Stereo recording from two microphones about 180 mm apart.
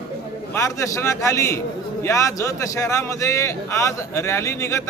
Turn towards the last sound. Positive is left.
turn(degrees=15)  # may be behind; listen again after turning